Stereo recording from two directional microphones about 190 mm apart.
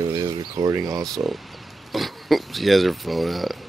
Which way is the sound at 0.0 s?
20° right (ahead or behind).